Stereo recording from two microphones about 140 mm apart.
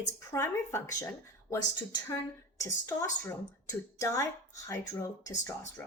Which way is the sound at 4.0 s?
20° left (ahead or behind).